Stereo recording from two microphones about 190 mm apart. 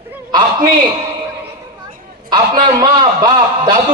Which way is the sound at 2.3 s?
25° right (ahead or behind).